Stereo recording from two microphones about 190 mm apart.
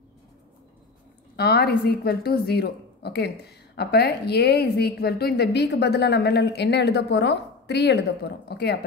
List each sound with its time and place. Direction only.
1.3 s a woman's voice: 55° left (ahead or behind)